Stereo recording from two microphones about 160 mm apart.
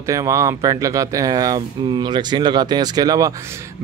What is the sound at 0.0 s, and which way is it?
Speech, 20° right (ahead or behind).